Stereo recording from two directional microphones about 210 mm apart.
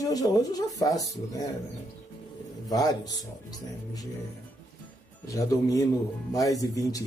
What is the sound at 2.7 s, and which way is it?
Speech, 15° left (ahead or behind).